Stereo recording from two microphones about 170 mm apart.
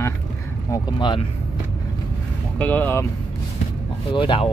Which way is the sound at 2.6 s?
10° left (ahead or behind).